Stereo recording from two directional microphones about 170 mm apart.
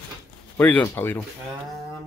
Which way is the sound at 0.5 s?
10° left (ahead or behind).